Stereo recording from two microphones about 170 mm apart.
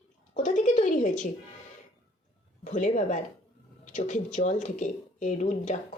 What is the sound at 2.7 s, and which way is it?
A woman's voice, 45° left (ahead or behind).